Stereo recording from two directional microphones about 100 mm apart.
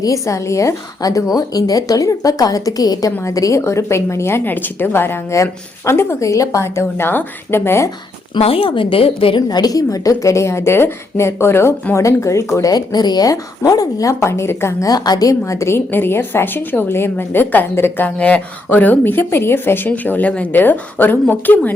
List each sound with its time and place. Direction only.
0.0 s a woman's voice: 30° left (ahead or behind)
8.4 s speech: 70° left (ahead or behind)
9.5 s a woman's voice: 40° left (ahead or behind)
12.7 s a woman's voice: 45° left (ahead or behind); by 21.7 s 15° left (ahead or behind)